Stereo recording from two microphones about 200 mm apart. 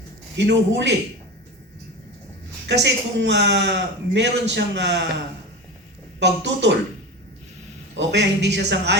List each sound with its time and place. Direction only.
0.3 s speech: 60° right (ahead or behind)
2.6 s speech: 60° right (ahead or behind)
6.1 s speech: 60° right (ahead or behind)
7.9 s speech: 60° right (ahead or behind)